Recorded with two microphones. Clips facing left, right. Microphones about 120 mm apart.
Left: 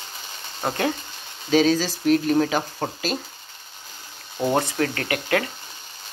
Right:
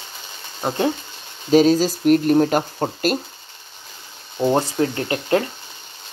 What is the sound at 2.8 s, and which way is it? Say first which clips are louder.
Speech: right 4 dB; 30° right (ahead or behind).